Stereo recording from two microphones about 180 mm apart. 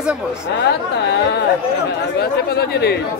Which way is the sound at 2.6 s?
65° left (ahead or behind).